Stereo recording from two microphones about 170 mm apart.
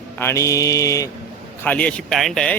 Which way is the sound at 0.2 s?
15° left (ahead or behind).